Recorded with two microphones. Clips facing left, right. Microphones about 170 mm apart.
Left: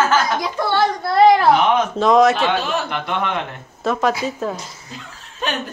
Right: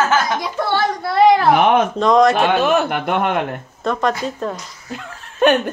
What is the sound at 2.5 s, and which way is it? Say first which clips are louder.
Speech: right 5 dB; 55° right (ahead or behind).